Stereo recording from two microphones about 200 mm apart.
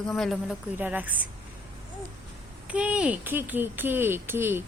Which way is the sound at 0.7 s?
10° right (ahead or behind).